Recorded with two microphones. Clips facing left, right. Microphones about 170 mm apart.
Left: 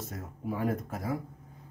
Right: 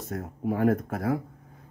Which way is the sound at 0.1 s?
55° right (ahead or behind).